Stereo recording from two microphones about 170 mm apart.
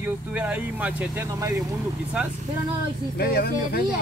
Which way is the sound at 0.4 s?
10° right (ahead or behind).